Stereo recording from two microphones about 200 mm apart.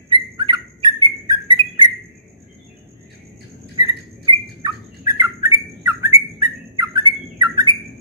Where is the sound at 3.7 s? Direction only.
20° right (ahead or behind).